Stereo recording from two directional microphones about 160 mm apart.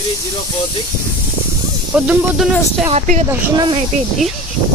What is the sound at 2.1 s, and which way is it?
Speech, centre (ahead or behind).